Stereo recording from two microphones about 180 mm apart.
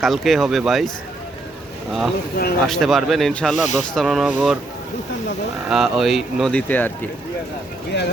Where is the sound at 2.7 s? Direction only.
Centre (ahead or behind).